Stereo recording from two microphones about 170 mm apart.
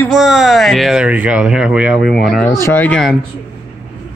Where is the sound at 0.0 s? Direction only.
Centre (ahead or behind).